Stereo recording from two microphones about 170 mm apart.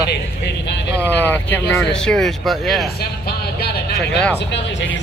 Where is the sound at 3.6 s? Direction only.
70° left (ahead or behind).